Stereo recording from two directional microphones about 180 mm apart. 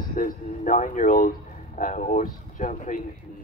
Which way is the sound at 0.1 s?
45° left (ahead or behind).